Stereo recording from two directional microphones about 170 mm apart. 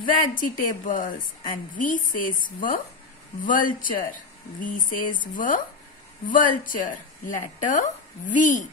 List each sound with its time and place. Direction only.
0.0 s a woman's voice: 55° left (ahead or behind)